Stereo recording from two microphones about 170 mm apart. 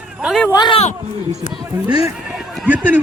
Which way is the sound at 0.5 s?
25° left (ahead or behind).